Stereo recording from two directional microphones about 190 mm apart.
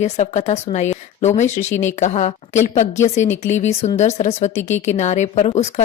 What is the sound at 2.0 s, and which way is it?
A woman's voice, 35° left (ahead or behind).